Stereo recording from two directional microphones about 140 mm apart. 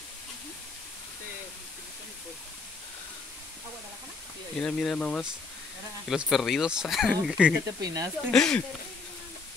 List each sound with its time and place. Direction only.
4.6 s speech: 5° left (ahead or behind)
7.8 s speech: 25° right (ahead or behind)
8.3 s speech: 5° left (ahead or behind)